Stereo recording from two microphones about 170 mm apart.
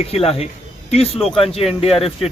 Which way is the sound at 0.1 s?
35° left (ahead or behind).